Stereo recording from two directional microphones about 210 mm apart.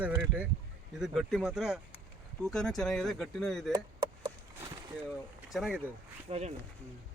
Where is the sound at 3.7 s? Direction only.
20° right (ahead or behind).